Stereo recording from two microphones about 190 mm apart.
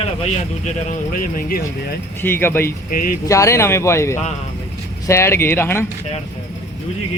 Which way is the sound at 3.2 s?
15° left (ahead or behind).